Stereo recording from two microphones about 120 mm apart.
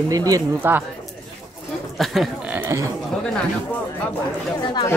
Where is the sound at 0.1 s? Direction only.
30° right (ahead or behind).